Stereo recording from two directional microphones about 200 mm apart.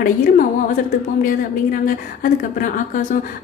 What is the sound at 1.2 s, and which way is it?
A woman's voice, 45° left (ahead or behind).